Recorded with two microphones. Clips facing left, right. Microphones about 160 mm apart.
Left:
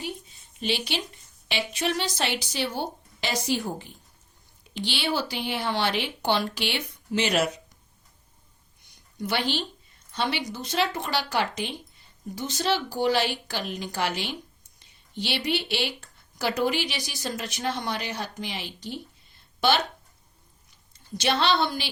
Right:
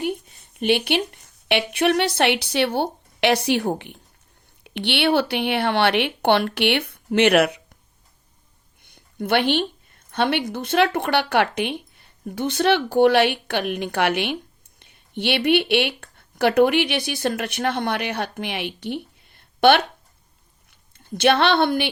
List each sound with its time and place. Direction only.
0.0 s a woman's voice: 60° right (ahead or behind)
8.8 s a woman's voice: 60° right (ahead or behind)